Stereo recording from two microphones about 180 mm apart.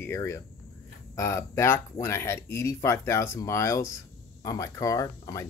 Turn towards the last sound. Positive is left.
turn(degrees=20)  # may be behind; listen again after turning